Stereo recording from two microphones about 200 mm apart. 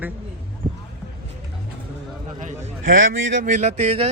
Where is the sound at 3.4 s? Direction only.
40° right (ahead or behind).